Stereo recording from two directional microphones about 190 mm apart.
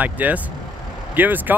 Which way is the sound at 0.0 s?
10° right (ahead or behind).